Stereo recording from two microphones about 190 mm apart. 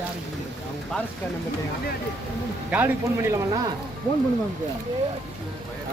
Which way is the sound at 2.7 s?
10° right (ahead or behind).